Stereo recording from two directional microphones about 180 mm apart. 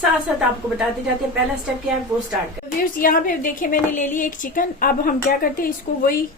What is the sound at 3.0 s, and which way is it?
A woman's voice, 50° left (ahead or behind).